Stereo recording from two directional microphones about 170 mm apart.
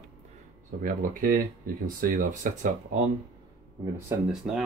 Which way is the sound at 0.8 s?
55° right (ahead or behind).